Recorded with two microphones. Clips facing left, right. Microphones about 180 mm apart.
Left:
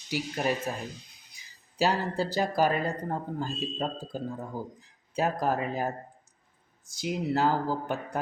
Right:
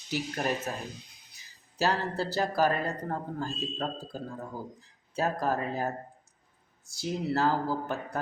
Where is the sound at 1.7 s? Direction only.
15° left (ahead or behind).